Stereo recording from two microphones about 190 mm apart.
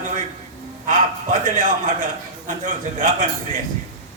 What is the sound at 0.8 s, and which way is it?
A man's voice, 40° right (ahead or behind).